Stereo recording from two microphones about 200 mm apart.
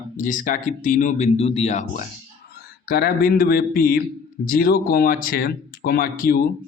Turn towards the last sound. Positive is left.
turn(degrees=45)  # may be behind; listen again after turning